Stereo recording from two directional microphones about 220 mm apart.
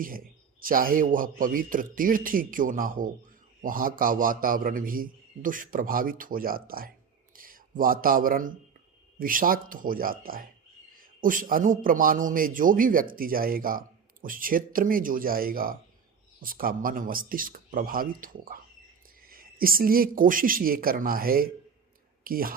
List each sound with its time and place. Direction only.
0.0 s a man's voice: 40° right (ahead or behind)